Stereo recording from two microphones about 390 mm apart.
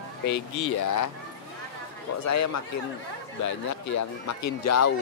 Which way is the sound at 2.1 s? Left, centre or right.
Left.